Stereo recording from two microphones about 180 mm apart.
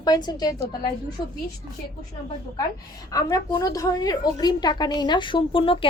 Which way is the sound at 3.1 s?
20° left (ahead or behind).